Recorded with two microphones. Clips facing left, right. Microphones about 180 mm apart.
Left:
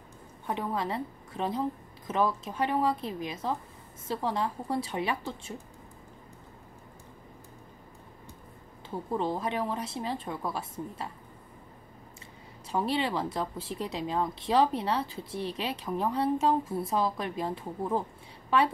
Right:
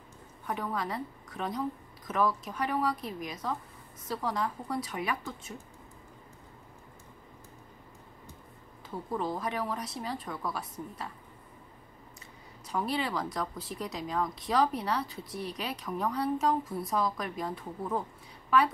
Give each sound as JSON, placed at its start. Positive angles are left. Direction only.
{"t": 0.5, "sound": "speech", "side_deg": 25}
{"t": 8.9, "sound": "speech", "side_deg": 25}
{"t": 12.6, "sound": "speech", "side_deg": 25}